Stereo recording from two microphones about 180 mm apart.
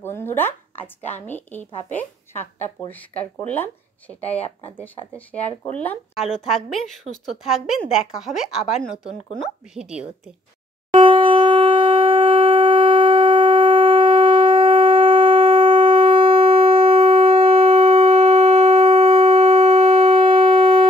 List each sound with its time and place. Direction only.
0.0 s a woman's voice: 10° left (ahead or behind); by 10.3 s 5° right (ahead or behind)
10.9 s shofar: 30° right (ahead or behind)